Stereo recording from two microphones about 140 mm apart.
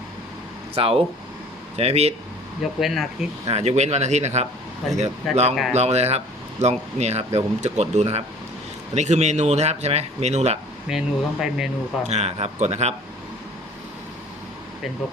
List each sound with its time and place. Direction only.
0.8 s speech: 40° right (ahead or behind)
2.8 s speech: centre (ahead or behind)
3.5 s speech: 50° right (ahead or behind)
10.8 s speech: 5° right (ahead or behind)
12.0 s speech: 50° right (ahead or behind)